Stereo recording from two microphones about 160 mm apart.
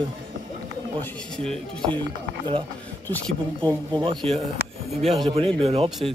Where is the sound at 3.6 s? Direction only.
25° right (ahead or behind).